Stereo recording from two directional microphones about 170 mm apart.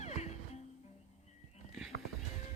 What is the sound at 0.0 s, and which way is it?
Music, 40° left (ahead or behind).